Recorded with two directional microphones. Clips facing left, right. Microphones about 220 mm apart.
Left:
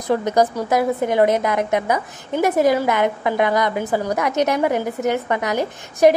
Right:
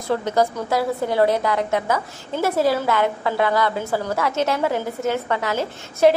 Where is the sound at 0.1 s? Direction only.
20° left (ahead or behind).